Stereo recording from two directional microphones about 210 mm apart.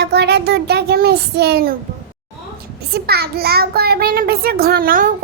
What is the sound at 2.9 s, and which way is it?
Child singing, 50° right (ahead or behind).